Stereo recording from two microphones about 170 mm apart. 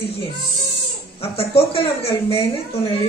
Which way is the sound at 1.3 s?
35° left (ahead or behind).